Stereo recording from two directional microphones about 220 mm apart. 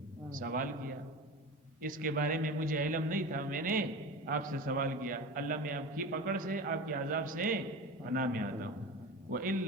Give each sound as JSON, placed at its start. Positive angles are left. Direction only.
{"t": 0.3, "sound": "a man's voice", "side_deg": -40}
{"t": 1.8, "sound": "a man's voice", "side_deg": -40}